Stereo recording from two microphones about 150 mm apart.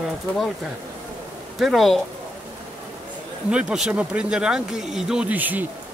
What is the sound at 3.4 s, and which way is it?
A man's voice, 5° right (ahead or behind).